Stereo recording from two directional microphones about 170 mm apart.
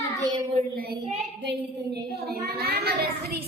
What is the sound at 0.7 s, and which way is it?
Speech, 60° right (ahead or behind).